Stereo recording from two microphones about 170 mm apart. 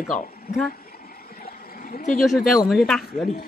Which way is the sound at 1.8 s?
50° left (ahead or behind).